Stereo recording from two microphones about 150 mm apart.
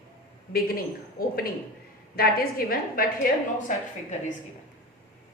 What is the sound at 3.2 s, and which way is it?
Speech, 70° left (ahead or behind).